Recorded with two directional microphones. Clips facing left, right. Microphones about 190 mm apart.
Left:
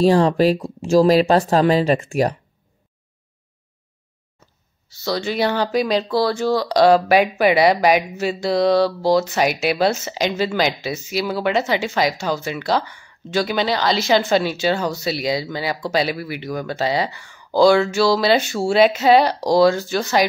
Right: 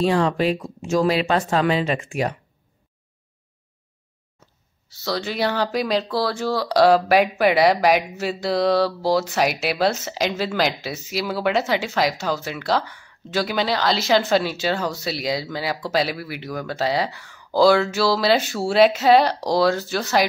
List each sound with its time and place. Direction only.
0.0 s speech: 35° left (ahead or behind)
4.8 s speech: centre (ahead or behind)